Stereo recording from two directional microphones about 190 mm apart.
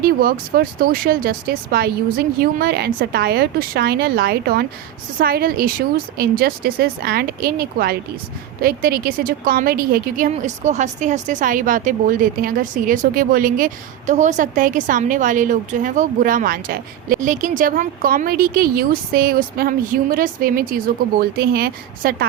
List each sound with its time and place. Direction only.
0.0 s a woman's voice: 50° right (ahead or behind)